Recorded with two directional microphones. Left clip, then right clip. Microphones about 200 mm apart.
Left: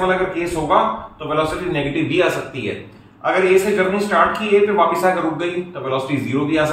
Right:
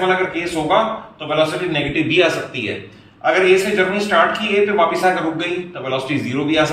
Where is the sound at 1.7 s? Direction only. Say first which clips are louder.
Right 2 dB; 30° left (ahead or behind).